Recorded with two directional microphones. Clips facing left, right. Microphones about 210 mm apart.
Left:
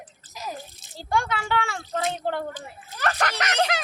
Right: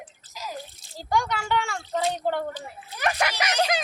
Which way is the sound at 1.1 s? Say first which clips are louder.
Even; centre (ahead or behind).